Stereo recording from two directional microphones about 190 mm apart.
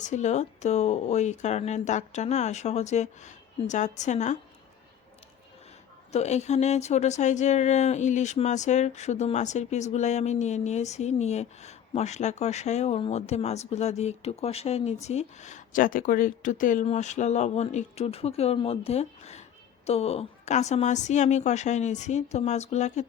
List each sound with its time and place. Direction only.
0.0 s speech: 40° left (ahead or behind)
6.1 s speech: 35° left (ahead or behind)